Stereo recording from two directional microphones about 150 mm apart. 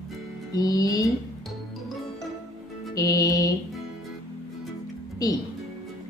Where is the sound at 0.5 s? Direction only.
25° left (ahead or behind).